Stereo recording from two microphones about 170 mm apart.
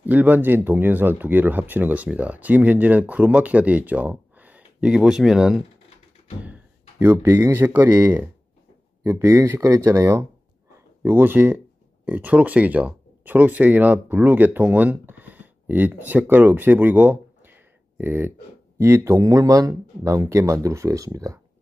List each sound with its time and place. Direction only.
0.0 s speech: 10° right (ahead or behind)